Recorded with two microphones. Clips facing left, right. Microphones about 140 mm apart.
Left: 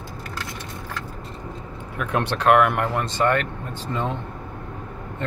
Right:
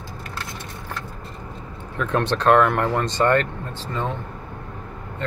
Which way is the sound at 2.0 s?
10° left (ahead or behind).